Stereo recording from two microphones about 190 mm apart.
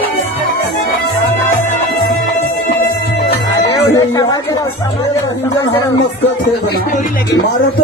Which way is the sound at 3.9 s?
15° left (ahead or behind).